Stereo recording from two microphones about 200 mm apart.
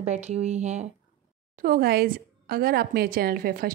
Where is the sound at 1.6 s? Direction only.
50° right (ahead or behind).